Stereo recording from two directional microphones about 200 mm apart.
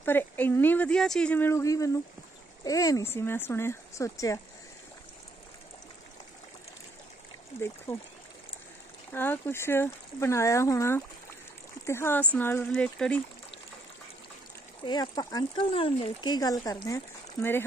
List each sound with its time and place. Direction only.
0.0 s speech: 10° left (ahead or behind)
7.9 s speech: 30° left (ahead or behind)
9.1 s speech: 10° left (ahead or behind)
14.9 s speech: 20° left (ahead or behind)